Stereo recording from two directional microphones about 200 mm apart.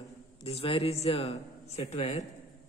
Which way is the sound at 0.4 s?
30° left (ahead or behind).